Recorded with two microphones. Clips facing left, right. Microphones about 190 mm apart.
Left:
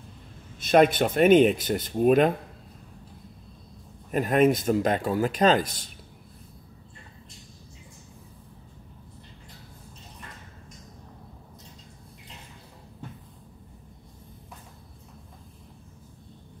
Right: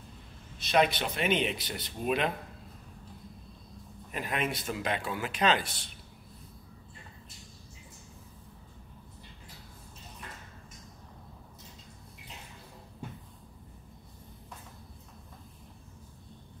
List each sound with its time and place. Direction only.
0.6 s speech: 50° left (ahead or behind)
4.1 s speech: 45° left (ahead or behind)